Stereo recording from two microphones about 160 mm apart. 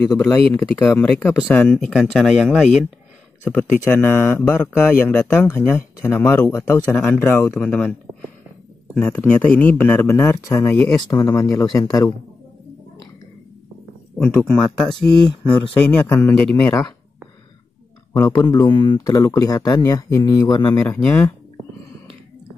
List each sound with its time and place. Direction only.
0.2 s speech: 10° left (ahead or behind)
8.9 s speech: 10° left (ahead or behind); by 12.1 s 25° left (ahead or behind)
14.1 s speech: 5° left (ahead or behind)
15.8 s speech: 15° left (ahead or behind)
18.1 s speech: 25° left (ahead or behind)
20.8 s speech: 10° left (ahead or behind)